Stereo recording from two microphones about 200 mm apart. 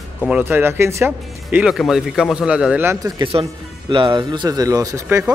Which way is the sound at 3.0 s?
25° right (ahead or behind).